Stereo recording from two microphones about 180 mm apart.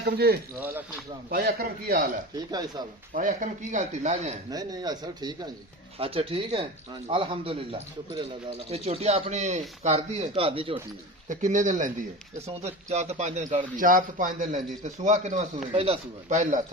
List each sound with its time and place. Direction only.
0.0 s a man's voice: 60° right (ahead or behind)
2.5 s speech: 20° right (ahead or behind)
3.1 s a man's voice: 45° right (ahead or behind)
4.4 s speech: 20° right (ahead or behind)
11.3 s a man's voice: 45° right (ahead or behind)
15.7 s speech: 30° right (ahead or behind)
16.3 s a man's voice: 45° right (ahead or behind)